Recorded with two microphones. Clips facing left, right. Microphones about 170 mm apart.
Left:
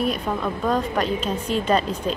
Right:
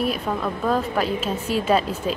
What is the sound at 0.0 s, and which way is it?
A woman's voice, centre (ahead or behind).